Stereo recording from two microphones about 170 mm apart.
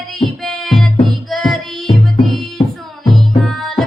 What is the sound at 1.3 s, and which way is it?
Music, centre (ahead or behind).